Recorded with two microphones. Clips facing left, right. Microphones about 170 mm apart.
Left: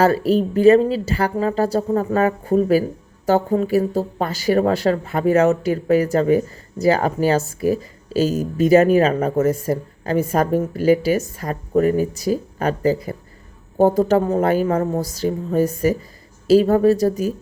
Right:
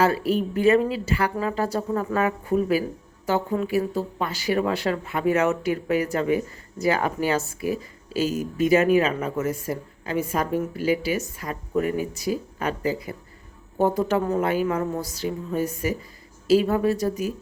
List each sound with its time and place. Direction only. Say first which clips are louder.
0.0 s speech: left 5 dB; 40° left (ahead or behind)